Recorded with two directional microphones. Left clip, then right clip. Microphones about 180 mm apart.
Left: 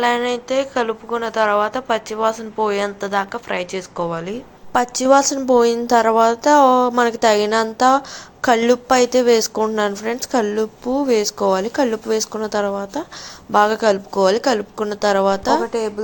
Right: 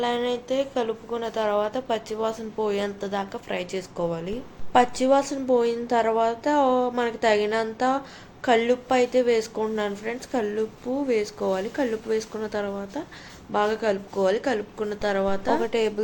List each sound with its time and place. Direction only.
0.0 s a woman's voice: 10° left (ahead or behind)
4.7 s a woman's voice: 25° left (ahead or behind)